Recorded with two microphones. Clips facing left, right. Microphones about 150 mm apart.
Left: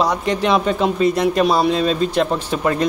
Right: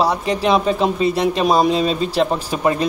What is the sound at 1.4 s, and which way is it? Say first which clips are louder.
Speech: right 1 dB; 10° right (ahead or behind).